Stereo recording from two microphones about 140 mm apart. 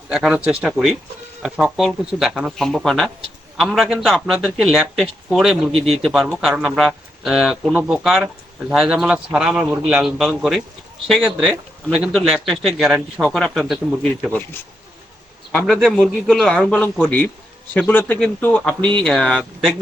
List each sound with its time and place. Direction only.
0.1 s speech: 5° right (ahead or behind)
5.7 s a man's voice: 45° right (ahead or behind)
6.0 s speech: centre (ahead or behind)
15.5 s speech: 5° left (ahead or behind)